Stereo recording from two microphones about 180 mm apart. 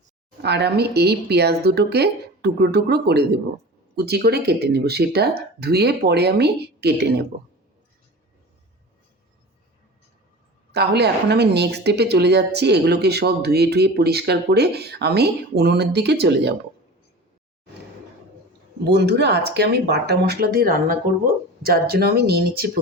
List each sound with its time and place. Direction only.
0.4 s speech: 65° right (ahead or behind)
10.7 s speech: 65° right (ahead or behind)
18.9 s speech: 70° right (ahead or behind)